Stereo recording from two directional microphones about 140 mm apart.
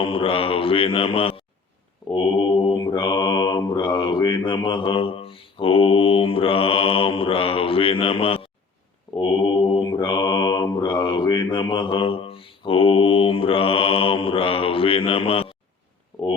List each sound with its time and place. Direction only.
0.0 s mantra: 40° left (ahead or behind)